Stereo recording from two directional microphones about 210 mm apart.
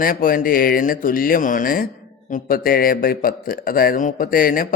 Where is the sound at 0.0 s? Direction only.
40° left (ahead or behind).